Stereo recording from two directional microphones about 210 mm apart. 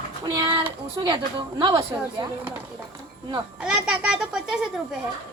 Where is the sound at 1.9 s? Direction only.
10° right (ahead or behind).